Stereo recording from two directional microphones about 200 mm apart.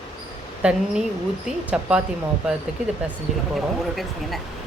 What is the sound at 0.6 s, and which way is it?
Speech, 5° right (ahead or behind).